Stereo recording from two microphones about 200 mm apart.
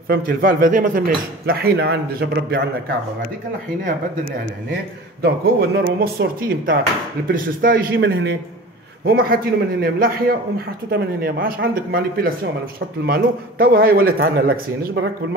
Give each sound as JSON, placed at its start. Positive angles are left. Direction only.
{"t": 0.1, "sound": "speech", "side_deg": -45}
{"t": 5.2, "sound": "speech", "side_deg": -50}